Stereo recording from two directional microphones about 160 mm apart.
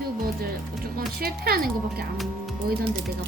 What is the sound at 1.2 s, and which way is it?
Speech, 70° right (ahead or behind).